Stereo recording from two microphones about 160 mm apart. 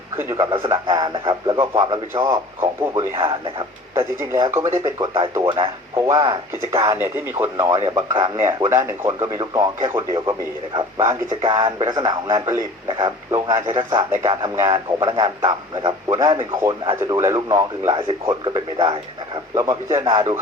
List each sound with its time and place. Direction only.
0.2 s speech: 20° right (ahead or behind)
0.5 s speech: 30° right (ahead or behind)
3.2 s a man's voice: 30° right (ahead or behind)
3.9 s speech: 15° right (ahead or behind)
4.9 s a man's voice: 35° right (ahead or behind)
6.9 s speech: 15° right (ahead or behind); by 14.0 s 30° right (ahead or behind)
14.5 s speech: 20° right (ahead or behind)
15.0 s a man's voice: 30° right (ahead or behind)
17.0 s speech: 20° right (ahead or behind)
20.1 s speech: 30° right (ahead or behind)